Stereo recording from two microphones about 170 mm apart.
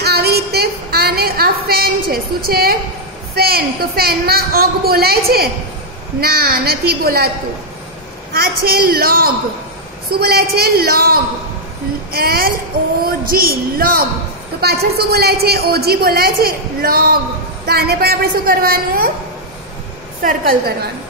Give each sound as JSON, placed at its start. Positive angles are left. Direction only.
{"t": 0.0, "sound": "a sound", "side_deg": -70}
{"t": 3.3, "sound": "a woman's voice", "side_deg": -65}
{"t": 8.3, "sound": "a woman's voice", "side_deg": -60}
{"t": 20.2, "sound": "a woman's voice", "side_deg": -55}